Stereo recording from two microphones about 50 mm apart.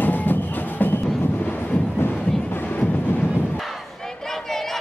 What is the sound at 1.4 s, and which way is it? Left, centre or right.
Vehicle, left.